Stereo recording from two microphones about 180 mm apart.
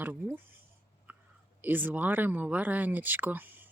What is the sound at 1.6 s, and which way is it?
Speech, 10° right (ahead or behind).